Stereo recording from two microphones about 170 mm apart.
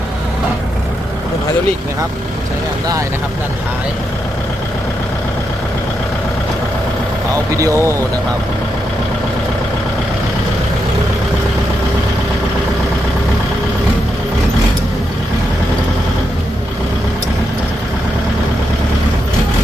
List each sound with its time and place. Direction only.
7.5 s speech: 20° right (ahead or behind)